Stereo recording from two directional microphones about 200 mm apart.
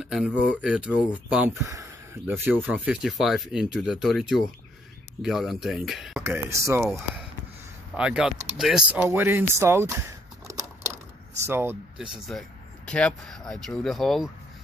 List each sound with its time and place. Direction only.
0.0 s speech: 5° right (ahead or behind)
6.2 s speech: 15° right (ahead or behind)
7.9 s speech: 5° right (ahead or behind)